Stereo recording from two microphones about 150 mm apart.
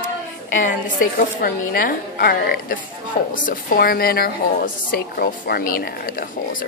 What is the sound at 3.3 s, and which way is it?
A woman's voice, 65° left (ahead or behind).